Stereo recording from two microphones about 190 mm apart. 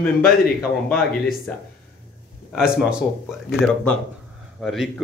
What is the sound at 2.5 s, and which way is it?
A man's voice, 5° right (ahead or behind).